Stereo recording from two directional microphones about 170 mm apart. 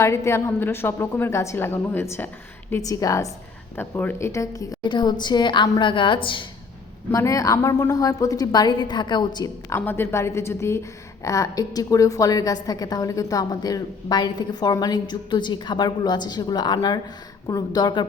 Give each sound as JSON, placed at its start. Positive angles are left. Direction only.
{"t": 0.0, "sound": "a woman's voice", "side_deg": 15}
{"t": 7.1, "sound": "a woman's voice", "side_deg": 20}